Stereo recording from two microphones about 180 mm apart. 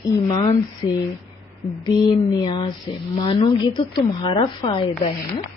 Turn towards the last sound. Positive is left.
turn(degrees=35)  # may be behind; listen again after turning